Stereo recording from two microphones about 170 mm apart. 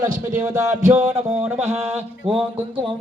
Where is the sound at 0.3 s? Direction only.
15° right (ahead or behind).